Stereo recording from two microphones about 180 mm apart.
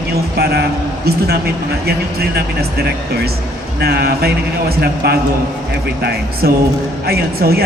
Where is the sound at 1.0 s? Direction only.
60° right (ahead or behind).